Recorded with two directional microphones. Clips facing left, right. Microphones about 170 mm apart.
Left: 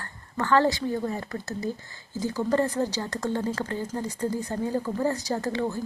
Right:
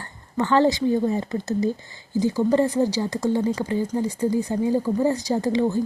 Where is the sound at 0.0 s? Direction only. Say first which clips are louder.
Right 5 dB; 20° right (ahead or behind).